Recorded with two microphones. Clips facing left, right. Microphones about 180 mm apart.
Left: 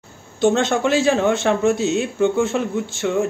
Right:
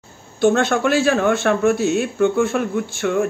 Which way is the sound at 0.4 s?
20° left (ahead or behind).